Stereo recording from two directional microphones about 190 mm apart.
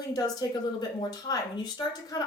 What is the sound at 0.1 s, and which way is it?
Speech, 20° left (ahead or behind).